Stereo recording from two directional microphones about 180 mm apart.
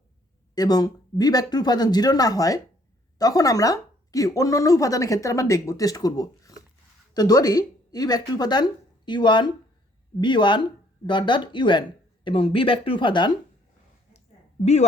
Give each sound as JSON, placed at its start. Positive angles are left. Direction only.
{"t": 0.5, "sound": "speech", "side_deg": 20}
{"t": 14.6, "sound": "a woman's voice", "side_deg": 35}